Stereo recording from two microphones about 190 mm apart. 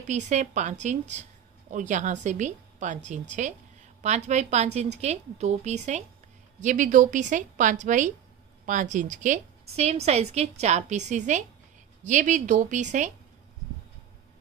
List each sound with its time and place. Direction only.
0.1 s a woman's voice: 40° right (ahead or behind)